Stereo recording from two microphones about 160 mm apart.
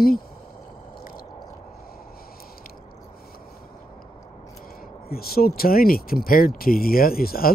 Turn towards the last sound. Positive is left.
turn(degrees=70)  # may be behind; listen again after turning